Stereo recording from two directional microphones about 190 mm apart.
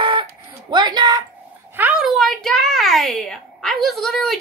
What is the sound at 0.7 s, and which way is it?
Speech, 25° right (ahead or behind).